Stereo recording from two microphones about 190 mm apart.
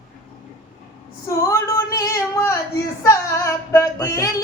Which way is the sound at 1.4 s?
15° left (ahead or behind).